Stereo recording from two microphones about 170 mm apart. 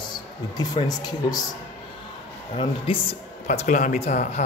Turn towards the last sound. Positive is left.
turn(degrees=45)  # may be behind; listen again after turning